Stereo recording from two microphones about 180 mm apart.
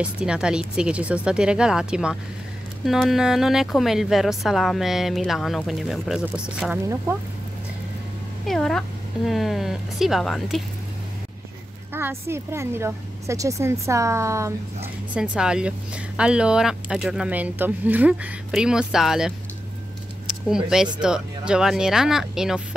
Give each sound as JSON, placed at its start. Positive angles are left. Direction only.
{"t": 0.0, "sound": "speech", "side_deg": -5}
{"t": 8.5, "sound": "speech", "side_deg": 0}
{"t": 11.9, "sound": "a woman's voice", "side_deg": -15}
{"t": 15.1, "sound": "speech", "side_deg": -5}
{"t": 20.4, "sound": "speech", "side_deg": -5}